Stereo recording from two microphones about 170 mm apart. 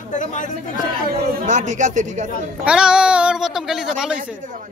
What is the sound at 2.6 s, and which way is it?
A woman's voice, 5° right (ahead or behind).